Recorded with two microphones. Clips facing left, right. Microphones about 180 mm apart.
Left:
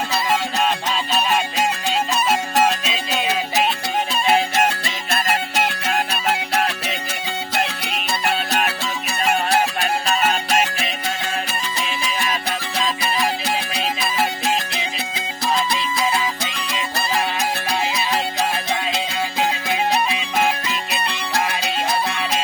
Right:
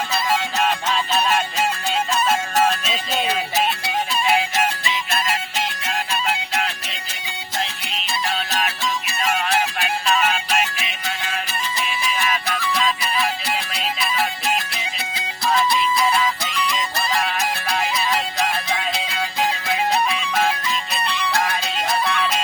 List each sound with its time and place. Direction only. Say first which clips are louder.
4.3 s music: left 3 dB; 35° left (ahead or behind)
4.8 s music: even; 45° left (ahead or behind)
5.5 s music: left 5 dB; 65° left (ahead or behind)
7.5 s music: left 3 dB; 60° left (ahead or behind)
9.5 s music: left 3 dB; 35° left (ahead or behind)
15.4 s music: right 2 dB; 20° left (ahead or behind)